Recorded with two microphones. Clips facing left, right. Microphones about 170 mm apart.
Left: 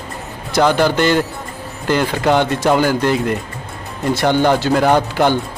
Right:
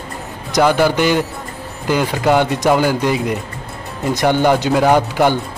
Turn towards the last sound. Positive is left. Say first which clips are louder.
# right 1 dB
turn(degrees=-10)  # may be behind; listen again after turning